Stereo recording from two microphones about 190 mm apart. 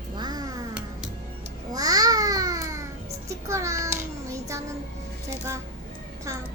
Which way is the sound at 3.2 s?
15° right (ahead or behind).